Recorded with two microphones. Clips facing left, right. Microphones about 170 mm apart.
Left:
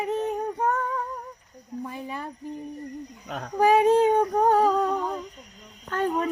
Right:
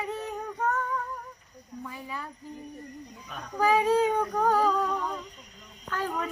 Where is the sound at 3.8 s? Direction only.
25° left (ahead or behind).